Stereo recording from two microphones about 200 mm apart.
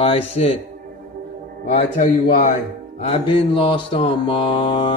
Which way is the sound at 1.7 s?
35° left (ahead or behind).